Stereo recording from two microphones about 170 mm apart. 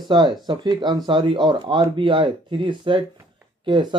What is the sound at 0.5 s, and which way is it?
Speech, 25° right (ahead or behind).